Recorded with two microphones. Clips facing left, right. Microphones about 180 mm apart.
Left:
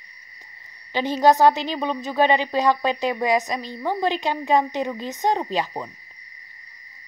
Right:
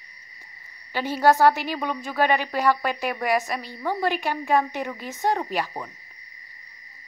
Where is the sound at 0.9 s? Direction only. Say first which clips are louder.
Left 2 dB; 20° left (ahead or behind).